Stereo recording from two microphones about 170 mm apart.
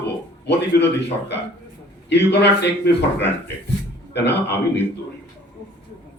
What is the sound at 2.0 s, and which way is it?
Speech, 80° left.